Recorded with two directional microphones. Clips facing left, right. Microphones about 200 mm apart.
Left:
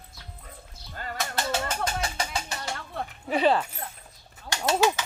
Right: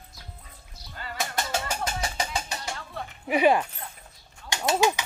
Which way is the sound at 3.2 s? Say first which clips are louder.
Right 2 dB; 10° right (ahead or behind).